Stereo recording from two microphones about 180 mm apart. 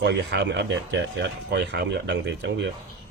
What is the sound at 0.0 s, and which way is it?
Speech, 70° right (ahead or behind).